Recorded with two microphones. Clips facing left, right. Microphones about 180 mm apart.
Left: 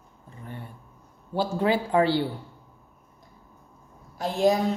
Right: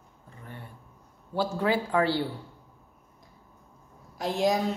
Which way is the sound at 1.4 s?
25° left (ahead or behind).